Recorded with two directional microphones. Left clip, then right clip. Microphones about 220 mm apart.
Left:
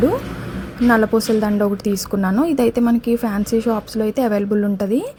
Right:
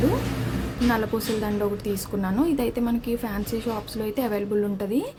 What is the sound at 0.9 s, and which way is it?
A woman's voice, 25° left (ahead or behind).